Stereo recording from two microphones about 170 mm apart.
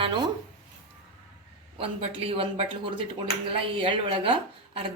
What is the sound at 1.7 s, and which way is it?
Speech, 35° right (ahead or behind).